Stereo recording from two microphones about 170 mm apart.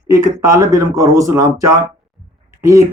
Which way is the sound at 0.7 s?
20° right (ahead or behind).